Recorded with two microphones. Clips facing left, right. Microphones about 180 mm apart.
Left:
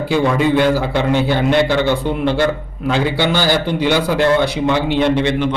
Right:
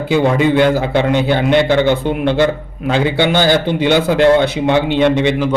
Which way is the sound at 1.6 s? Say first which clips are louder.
Right 3 dB; 50° right (ahead or behind).